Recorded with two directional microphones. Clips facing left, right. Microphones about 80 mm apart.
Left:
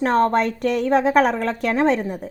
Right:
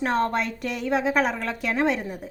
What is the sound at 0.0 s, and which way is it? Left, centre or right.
A woman's voice, left.